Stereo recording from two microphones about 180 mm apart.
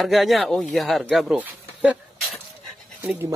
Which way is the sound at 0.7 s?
Centre (ahead or behind).